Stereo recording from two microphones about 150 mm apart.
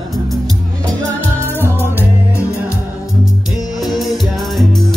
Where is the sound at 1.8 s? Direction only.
15° right (ahead or behind).